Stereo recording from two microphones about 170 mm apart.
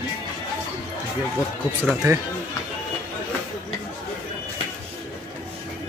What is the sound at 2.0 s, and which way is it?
Speech, 20° right (ahead or behind).